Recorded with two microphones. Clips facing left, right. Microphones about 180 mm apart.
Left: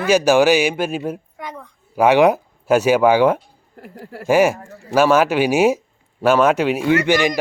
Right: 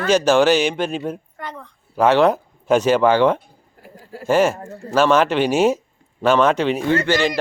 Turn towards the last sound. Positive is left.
turn(degrees=10)  # may be behind; listen again after turning